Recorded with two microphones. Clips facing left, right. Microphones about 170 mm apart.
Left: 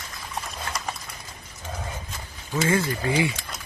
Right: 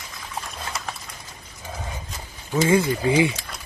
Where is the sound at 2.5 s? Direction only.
15° right (ahead or behind).